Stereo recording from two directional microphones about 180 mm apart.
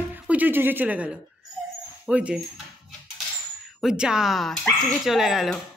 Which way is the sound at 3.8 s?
5° right (ahead or behind).